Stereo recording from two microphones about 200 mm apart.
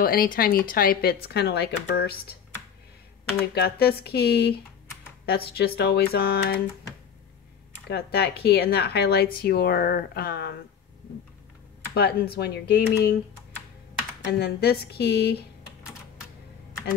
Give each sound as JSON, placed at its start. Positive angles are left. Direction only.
{"t": 0.0, "sound": "a woman's voice", "side_deg": 45}
{"t": 3.5, "sound": "a woman's voice", "side_deg": 55}
{"t": 7.9, "sound": "a woman's voice", "side_deg": 55}
{"t": 11.9, "sound": "a woman's voice", "side_deg": 50}
{"t": 14.2, "sound": "a woman's voice", "side_deg": 55}